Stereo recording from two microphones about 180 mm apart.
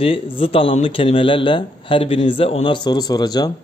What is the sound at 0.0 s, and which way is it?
Speech, 30° left (ahead or behind).